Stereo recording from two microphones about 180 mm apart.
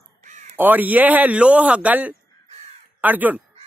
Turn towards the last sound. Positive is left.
turn(degrees=-10)  # may be behind; listen again after turning